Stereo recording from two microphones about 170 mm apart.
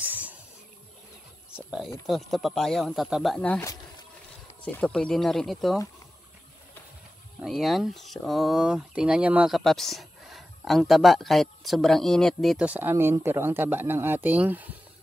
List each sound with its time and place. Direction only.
0.0 s a sound: 10° right (ahead or behind)
2.0 s speech: centre (ahead or behind)
4.6 s speech: 5° left (ahead or behind)
7.4 s speech: centre (ahead or behind)